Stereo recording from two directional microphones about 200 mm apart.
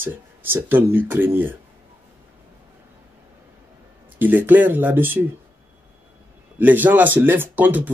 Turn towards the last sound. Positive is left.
turn(degrees=-10)  # may be behind; listen again after turning